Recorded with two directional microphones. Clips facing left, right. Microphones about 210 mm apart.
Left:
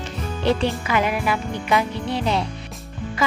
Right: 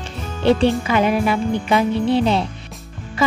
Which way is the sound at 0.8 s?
30° right (ahead or behind).